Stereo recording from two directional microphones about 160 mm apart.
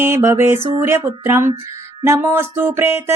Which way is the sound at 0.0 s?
15° right (ahead or behind).